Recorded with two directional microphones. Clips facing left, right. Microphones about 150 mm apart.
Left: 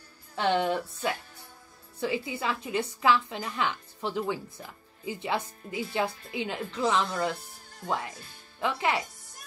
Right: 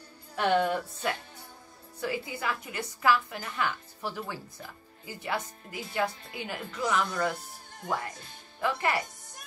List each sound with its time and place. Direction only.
0.4 s a woman's voice: 25° left (ahead or behind)